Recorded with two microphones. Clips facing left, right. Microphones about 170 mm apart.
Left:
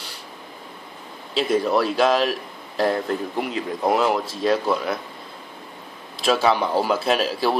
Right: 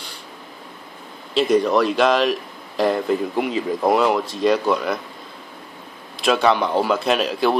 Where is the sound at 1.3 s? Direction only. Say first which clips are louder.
Right 3 dB; 5° left (ahead or behind).